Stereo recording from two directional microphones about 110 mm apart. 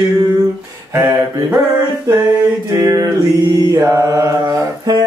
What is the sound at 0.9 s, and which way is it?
Mantra, 20° right (ahead or behind).